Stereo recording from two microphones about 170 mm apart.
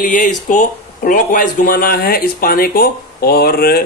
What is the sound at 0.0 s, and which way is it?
A man's voice, 55° left (ahead or behind).